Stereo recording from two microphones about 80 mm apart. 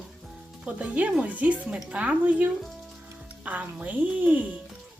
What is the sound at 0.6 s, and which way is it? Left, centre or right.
Speech, centre.